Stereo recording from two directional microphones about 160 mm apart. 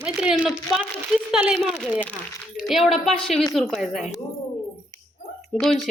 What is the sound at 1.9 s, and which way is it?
Speech, 10° left (ahead or behind).